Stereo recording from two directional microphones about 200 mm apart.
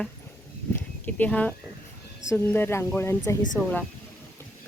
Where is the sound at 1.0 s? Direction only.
10° left (ahead or behind).